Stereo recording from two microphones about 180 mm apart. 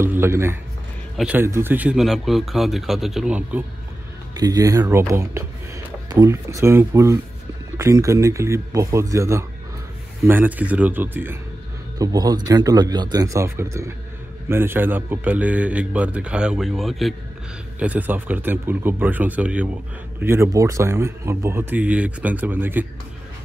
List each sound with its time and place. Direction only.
0.0 s a man's voice: 15° right (ahead or behind)
4.3 s speech: 20° right (ahead or behind)